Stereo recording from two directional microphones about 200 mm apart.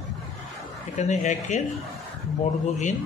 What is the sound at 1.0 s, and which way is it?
Speech, 35° left (ahead or behind).